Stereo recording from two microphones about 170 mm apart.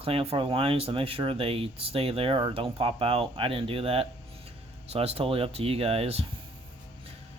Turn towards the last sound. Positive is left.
turn(degrees=-35)  # may be behind; listen again after turning